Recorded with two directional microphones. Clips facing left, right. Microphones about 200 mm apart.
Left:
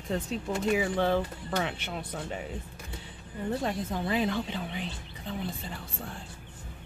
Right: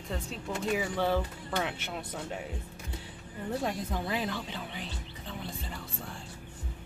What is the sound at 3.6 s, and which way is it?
Speech, 5° right (ahead or behind).